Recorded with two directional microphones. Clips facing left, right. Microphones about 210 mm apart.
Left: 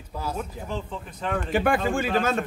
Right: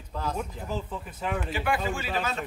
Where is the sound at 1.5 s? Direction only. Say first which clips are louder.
Left 9 dB; 50° left (ahead or behind).